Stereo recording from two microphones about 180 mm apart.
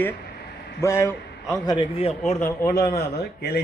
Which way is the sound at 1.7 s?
25° left (ahead or behind).